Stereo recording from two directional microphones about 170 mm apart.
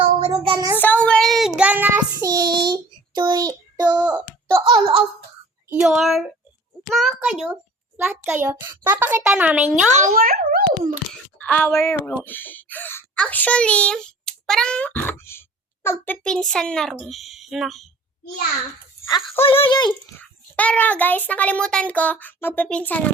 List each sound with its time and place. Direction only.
0.0 s child singing: 35° right (ahead or behind)
0.8 s child singing: 10° left (ahead or behind); by 2.7 s 25° right (ahead or behind)
3.2 s a child's voice: 25° right (ahead or behind)
3.8 s a sound: 10° right (ahead or behind)
4.6 s baby laughter: 30° right (ahead or behind)
5.8 s a child's voice: centre (ahead or behind)
7.9 s a child's voice: 15° right (ahead or behind)
9.9 s a child's voice: 50° right (ahead or behind)
11.3 s a woman's voice: 5° left (ahead or behind)
19.0 s speech: 15° left (ahead or behind)
19.5 s speech: 30° left (ahead or behind)
20.6 s a child's voice: 10° left (ahead or behind)